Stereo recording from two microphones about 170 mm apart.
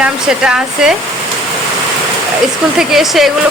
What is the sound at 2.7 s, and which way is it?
Speech, centre (ahead or behind).